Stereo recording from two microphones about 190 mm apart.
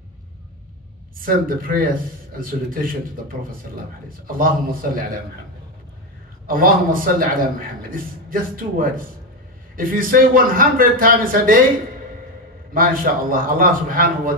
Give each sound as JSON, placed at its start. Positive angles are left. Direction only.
{"t": 1.1, "sound": "a man's voice", "side_deg": -50}
{"t": 4.3, "sound": "a man's voice", "side_deg": -50}
{"t": 6.4, "sound": "a man's voice", "side_deg": -50}
{"t": 12.7, "sound": "a man's voice", "side_deg": -50}